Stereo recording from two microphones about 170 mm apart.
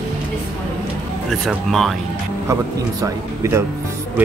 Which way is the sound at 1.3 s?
Centre (ahead or behind).